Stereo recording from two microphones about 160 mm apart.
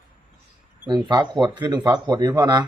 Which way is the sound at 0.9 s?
25° right (ahead or behind).